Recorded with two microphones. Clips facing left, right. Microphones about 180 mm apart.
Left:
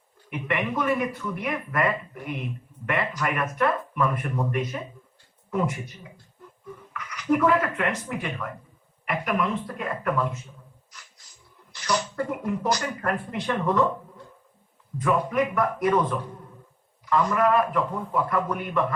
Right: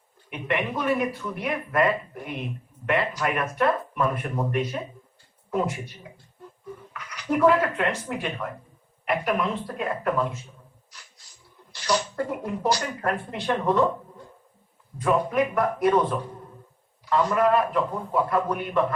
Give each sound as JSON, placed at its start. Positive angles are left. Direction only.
{"t": 0.4, "sound": "speech", "side_deg": -30}
{"t": 11.7, "sound": "speech", "side_deg": -30}
{"t": 15.0, "sound": "speech", "side_deg": -30}